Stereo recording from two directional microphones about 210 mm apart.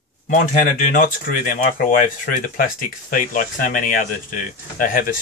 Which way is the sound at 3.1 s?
40° left (ahead or behind).